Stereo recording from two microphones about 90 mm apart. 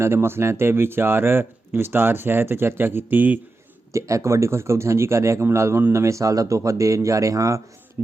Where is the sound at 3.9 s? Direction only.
35° right (ahead or behind).